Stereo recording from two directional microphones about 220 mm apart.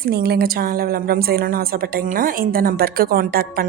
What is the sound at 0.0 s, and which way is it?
A woman's voice, 45° right (ahead or behind).